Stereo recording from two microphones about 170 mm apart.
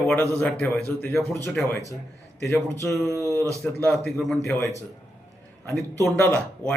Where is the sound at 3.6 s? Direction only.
5° left (ahead or behind).